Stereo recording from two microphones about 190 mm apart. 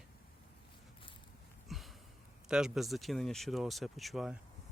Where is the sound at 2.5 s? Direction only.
5° right (ahead or behind).